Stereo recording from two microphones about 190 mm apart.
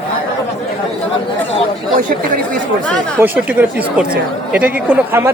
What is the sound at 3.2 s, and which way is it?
Speech, 10° right (ahead or behind).